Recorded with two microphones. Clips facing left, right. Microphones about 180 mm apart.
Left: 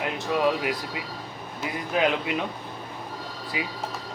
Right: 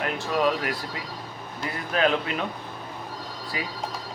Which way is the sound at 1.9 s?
15° left (ahead or behind).